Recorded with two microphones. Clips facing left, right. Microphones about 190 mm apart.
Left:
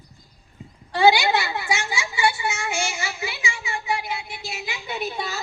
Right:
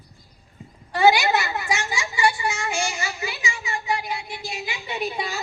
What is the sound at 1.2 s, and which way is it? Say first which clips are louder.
A child's voice: even; 10° left (ahead or behind).